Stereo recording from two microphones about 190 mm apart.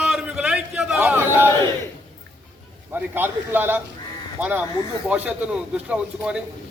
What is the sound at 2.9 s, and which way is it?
A man's voice, 10° right (ahead or behind).